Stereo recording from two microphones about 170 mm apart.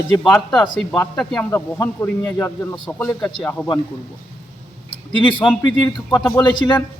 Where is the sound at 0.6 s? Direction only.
20° left (ahead or behind).